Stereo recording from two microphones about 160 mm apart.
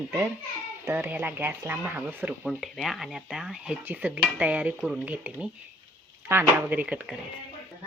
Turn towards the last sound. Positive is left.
turn(degrees=-10)  # may be behind; listen again after turning